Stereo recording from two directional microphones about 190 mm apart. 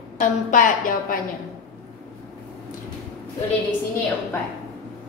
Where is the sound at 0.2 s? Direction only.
45° left (ahead or behind).